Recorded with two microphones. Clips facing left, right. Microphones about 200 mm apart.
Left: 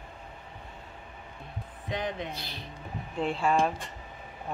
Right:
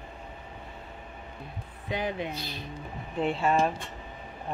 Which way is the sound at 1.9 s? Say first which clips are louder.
Right 2 dB; 5° right (ahead or behind).